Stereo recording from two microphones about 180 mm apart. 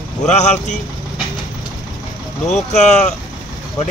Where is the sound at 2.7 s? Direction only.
40° left (ahead or behind).